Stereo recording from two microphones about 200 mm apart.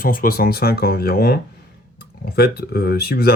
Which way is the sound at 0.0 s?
45° left (ahead or behind).